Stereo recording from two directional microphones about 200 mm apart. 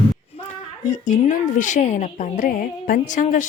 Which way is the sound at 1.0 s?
40° left (ahead or behind).